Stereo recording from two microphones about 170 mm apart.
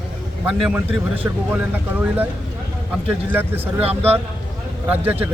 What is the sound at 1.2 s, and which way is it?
A man's voice, 10° right (ahead or behind).